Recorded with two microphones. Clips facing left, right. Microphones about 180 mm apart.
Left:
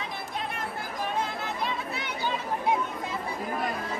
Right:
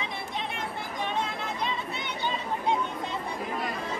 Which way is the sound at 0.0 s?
Centre (ahead or behind).